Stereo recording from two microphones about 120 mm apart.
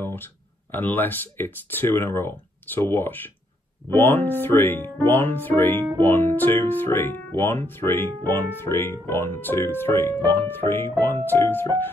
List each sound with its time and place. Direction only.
0.0 s speech: 20° left (ahead or behind)